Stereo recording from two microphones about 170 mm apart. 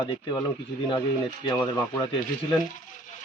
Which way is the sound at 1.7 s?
25° left (ahead or behind).